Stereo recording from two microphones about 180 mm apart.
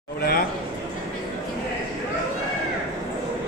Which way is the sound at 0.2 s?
55° left (ahead or behind).